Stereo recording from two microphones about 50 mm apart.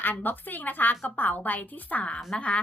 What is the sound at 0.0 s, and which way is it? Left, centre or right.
A woman's voice, left.